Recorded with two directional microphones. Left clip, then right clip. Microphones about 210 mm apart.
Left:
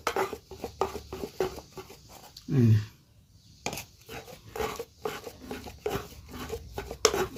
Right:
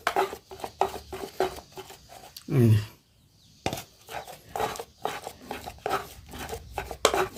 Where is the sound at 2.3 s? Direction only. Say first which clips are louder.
Right 3 dB; 60° right (ahead or behind).